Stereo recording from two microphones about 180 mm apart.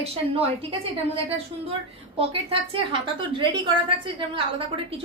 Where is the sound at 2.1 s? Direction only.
30° right (ahead or behind).